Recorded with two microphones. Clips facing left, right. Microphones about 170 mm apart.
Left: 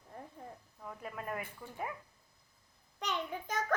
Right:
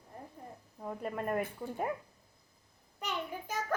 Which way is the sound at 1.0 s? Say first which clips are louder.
Right 7 dB; 45° right (ahead or behind).